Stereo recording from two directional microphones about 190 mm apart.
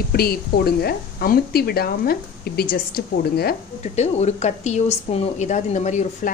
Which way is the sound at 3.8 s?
35° left (ahead or behind).